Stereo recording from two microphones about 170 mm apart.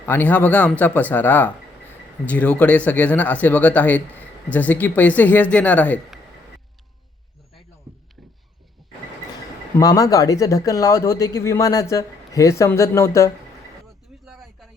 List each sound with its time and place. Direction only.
0.0 s speech: 10° left (ahead or behind)
8.8 s vehicle: centre (ahead or behind)
9.7 s speech: 20° left (ahead or behind)
14.3 s a sound: centre (ahead or behind)